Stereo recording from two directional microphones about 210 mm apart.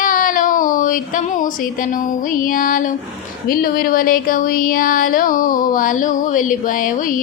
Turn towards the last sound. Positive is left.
turn(degrees=40)  # may be behind; listen again after turning